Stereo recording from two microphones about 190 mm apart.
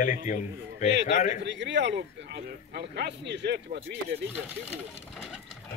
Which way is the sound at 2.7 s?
55° right (ahead or behind).